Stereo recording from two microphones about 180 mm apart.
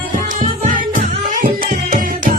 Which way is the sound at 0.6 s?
45° right (ahead or behind).